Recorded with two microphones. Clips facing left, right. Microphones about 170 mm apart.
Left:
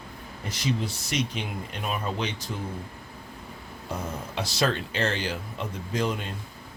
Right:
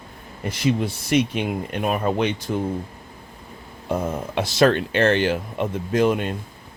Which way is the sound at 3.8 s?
55° right (ahead or behind).